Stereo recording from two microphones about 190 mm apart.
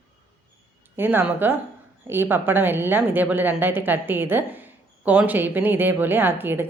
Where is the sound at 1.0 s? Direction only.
10° right (ahead or behind).